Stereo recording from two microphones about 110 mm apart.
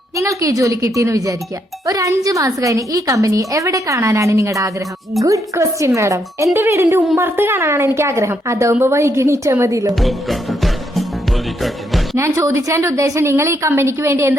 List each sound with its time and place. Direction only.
0.2 s a woman's voice: 30° right (ahead or behind)
9.9 s music: centre (ahead or behind)
12.1 s a woman's voice: 25° right (ahead or behind)